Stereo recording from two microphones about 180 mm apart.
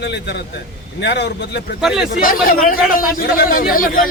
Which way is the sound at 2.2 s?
50° left (ahead or behind).